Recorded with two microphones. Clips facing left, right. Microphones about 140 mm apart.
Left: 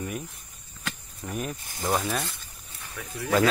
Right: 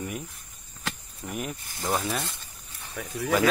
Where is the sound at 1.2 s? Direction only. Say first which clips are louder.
Left 1 dB; 15° right (ahead or behind).